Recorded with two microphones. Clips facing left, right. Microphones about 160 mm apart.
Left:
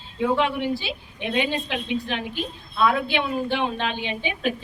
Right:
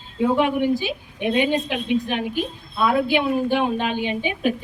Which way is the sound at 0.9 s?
50° right (ahead or behind).